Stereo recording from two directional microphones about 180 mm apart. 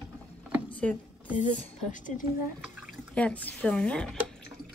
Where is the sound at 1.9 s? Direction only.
45° left (ahead or behind).